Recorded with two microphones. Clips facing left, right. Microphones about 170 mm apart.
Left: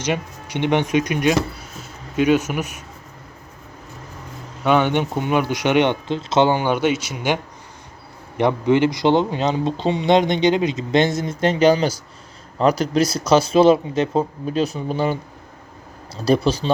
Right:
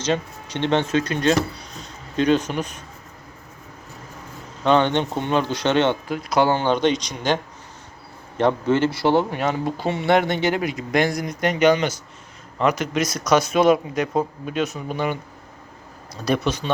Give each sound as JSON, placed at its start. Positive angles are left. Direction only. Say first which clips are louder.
{"t": 0.0, "sound": "speech", "louder": "even", "side_deg": 10}
{"t": 4.6, "sound": "speech", "louder": "even", "side_deg": 10}
{"t": 8.4, "sound": "speech", "louder": "left 2 dB", "side_deg": 15}